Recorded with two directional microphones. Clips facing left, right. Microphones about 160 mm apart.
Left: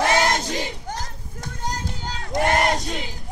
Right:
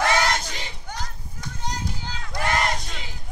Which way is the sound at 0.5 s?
40° left (ahead or behind).